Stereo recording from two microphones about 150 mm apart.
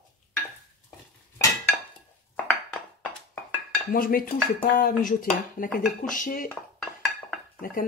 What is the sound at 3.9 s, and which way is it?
Speech, 75° left (ahead or behind).